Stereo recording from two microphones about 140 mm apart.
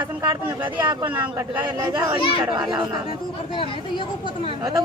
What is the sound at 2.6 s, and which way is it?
Speech, 30° right (ahead or behind).